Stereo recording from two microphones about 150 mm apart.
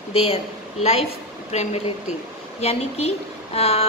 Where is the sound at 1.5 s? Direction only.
50° left (ahead or behind).